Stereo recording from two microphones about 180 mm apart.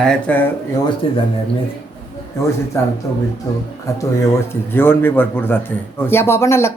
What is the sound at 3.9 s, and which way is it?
Speech, 15° left (ahead or behind).